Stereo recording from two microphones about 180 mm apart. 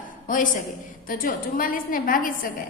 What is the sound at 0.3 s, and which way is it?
A woman's voice, 45° left (ahead or behind).